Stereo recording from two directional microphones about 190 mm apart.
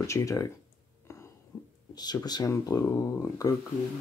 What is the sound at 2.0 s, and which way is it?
Speech, 20° left (ahead or behind).